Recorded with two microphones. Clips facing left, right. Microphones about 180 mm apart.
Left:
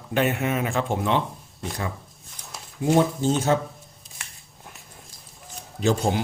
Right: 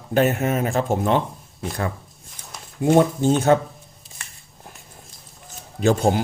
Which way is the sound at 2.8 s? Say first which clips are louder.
Right 4 dB; 55° right (ahead or behind).